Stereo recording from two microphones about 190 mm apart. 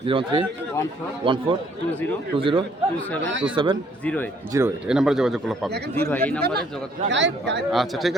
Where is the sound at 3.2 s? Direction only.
70° right (ahead or behind).